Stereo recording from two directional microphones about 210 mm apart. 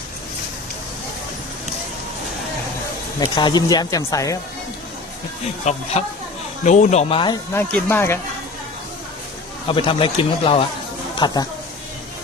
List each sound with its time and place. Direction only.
3.2 s speech: 20° left (ahead or behind)
5.7 s speech: 35° left (ahead or behind)
7.5 s speech: 10° left (ahead or behind)
9.6 s speech: 25° left (ahead or behind)